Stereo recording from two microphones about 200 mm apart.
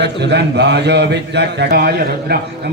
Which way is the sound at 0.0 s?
60° right (ahead or behind).